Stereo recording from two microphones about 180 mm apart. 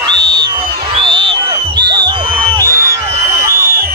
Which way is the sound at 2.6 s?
15° right (ahead or behind).